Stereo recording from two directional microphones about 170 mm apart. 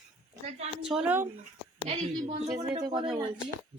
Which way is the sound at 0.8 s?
5° right (ahead or behind).